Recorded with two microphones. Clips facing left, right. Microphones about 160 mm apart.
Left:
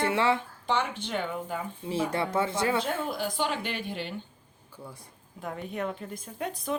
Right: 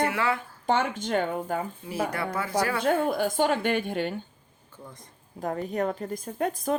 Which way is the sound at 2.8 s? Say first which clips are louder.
Right 7 dB; 55° right (ahead or behind).